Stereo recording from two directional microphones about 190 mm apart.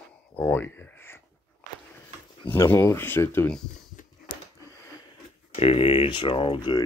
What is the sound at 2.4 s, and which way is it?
Speech, 10° left (ahead or behind).